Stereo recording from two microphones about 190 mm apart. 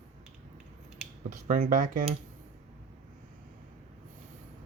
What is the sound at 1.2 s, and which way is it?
Speech, 45° right (ahead or behind).